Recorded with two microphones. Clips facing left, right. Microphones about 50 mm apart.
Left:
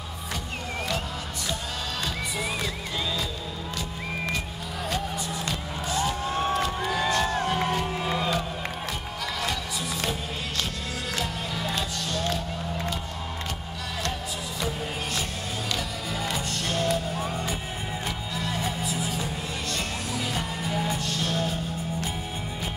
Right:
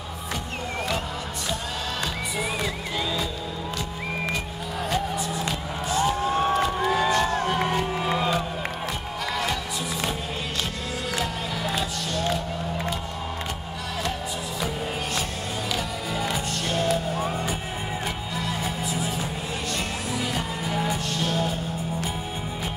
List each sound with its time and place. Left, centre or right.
4.8 s music: centre
11.1 s music: centre
15.7 s music: centre